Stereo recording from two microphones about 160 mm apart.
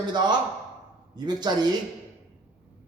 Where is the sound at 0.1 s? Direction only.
30° right (ahead or behind).